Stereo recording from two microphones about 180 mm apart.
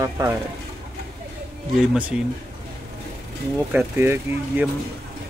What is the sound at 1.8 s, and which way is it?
Speech, 5° right (ahead or behind).